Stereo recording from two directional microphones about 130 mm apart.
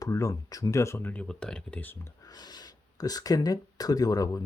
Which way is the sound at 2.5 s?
30° left (ahead or behind).